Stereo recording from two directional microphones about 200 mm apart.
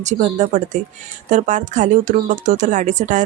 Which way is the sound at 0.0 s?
35° right (ahead or behind).